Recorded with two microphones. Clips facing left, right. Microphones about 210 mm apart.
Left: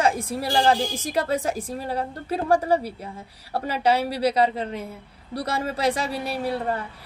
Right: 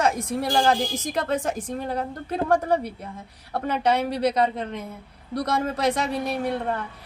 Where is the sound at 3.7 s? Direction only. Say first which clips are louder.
Left 1 dB; 30° left (ahead or behind).